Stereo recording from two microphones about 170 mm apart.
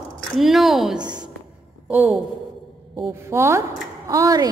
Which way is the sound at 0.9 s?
25° right (ahead or behind).